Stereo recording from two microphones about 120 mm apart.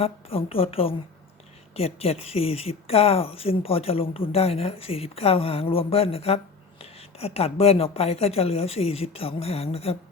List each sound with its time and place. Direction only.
0.0 s a woman's voice: 55° left (ahead or behind)